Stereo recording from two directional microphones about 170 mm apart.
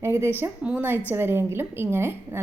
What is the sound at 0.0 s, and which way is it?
A woman's voice, 15° right (ahead or behind).